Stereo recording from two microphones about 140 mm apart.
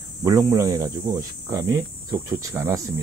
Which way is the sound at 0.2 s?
20° right (ahead or behind).